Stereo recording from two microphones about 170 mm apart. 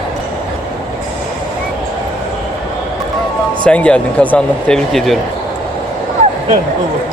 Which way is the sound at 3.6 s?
5° left (ahead or behind).